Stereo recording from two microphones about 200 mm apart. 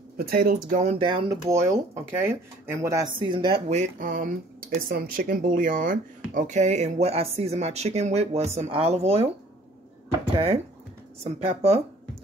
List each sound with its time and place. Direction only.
0.2 s speech: 50° right (ahead or behind)
0.9 s speech: 25° right (ahead or behind)
10.3 s speech: 30° right (ahead or behind)